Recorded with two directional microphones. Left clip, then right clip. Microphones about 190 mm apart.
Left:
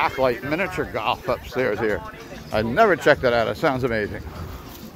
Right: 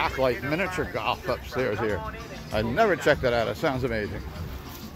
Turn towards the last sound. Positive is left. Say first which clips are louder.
# left 5 dB
turn(degrees=35)  # may be behind; listen again after turning